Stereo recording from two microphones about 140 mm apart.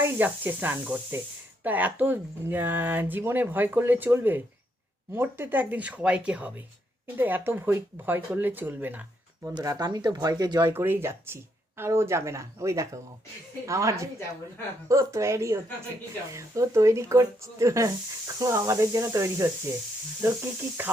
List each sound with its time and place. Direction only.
0.0 s speech: 15° right (ahead or behind)
9.6 s speech: 30° right (ahead or behind)
10.7 s speech: 15° right (ahead or behind)